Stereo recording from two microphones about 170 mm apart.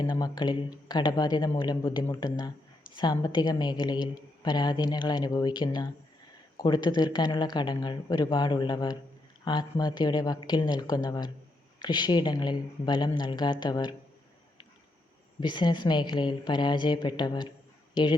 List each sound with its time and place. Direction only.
0.0 s a woman's voice: 25° left (ahead or behind)
15.4 s a woman's voice: 25° left (ahead or behind)